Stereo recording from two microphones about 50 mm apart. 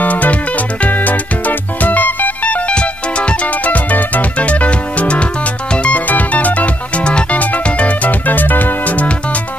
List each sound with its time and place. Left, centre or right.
0.0 s music: left
3.4 s music: left